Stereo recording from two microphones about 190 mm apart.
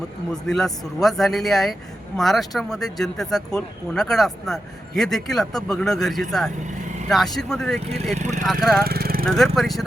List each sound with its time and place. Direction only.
0.4 s speech: centre (ahead or behind)
8.1 s speech: 35° right (ahead or behind)
8.8 s vehicle: 50° right (ahead or behind)
9.2 s speech: centre (ahead or behind)